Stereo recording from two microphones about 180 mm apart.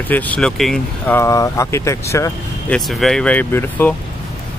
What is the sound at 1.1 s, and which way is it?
Speech, 15° left (ahead or behind).